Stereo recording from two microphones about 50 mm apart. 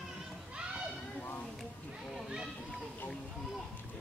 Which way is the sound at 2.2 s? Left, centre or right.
Centre.